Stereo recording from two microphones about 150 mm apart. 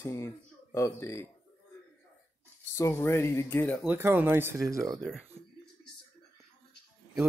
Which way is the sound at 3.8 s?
15° right (ahead or behind).